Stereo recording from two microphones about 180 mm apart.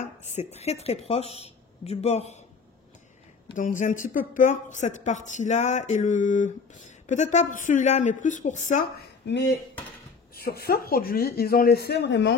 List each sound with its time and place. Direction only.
0.0 s speech: 40° left (ahead or behind)
3.5 s speech: 45° left (ahead or behind)
10.3 s speech: 60° left (ahead or behind)